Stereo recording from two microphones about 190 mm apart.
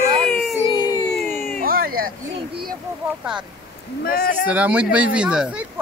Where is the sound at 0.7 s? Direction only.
20° left (ahead or behind).